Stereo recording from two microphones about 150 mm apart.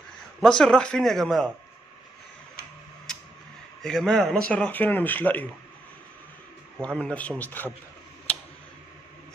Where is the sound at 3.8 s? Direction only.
5° left (ahead or behind).